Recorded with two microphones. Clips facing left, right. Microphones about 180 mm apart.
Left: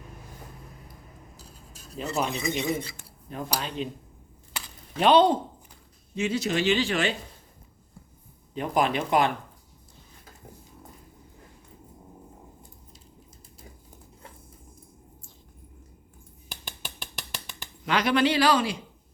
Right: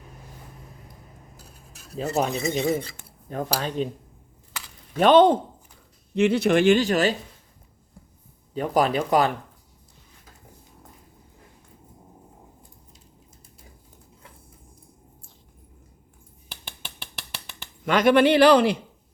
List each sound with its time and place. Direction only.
2.0 s speech: 40° right (ahead or behind)
4.9 s speech: 50° right (ahead or behind)
6.1 s speech: 60° right (ahead or behind); by 7.2 s 40° right (ahead or behind)
8.5 s speech: 40° right (ahead or behind)
17.8 s speech: 50° right (ahead or behind)